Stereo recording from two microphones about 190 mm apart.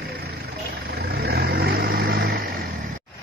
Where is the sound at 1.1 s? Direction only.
55° right (ahead or behind).